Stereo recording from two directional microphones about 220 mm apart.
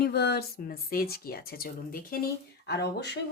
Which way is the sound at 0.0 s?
45° left (ahead or behind).